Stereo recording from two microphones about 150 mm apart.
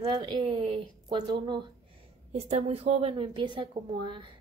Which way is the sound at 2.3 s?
45° right (ahead or behind).